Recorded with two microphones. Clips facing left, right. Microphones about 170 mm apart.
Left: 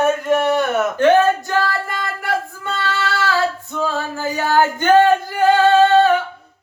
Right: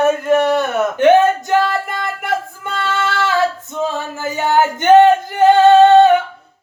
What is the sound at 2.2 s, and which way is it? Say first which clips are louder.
Singing: right 1 dB; 20° right (ahead or behind).